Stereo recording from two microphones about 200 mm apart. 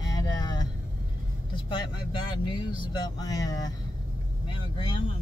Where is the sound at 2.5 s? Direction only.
20° left (ahead or behind).